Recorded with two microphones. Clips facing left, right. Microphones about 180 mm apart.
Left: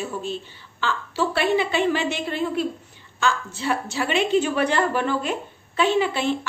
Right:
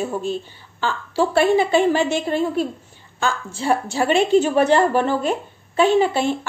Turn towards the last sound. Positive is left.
turn(degrees=-40)  # may be behind; listen again after turning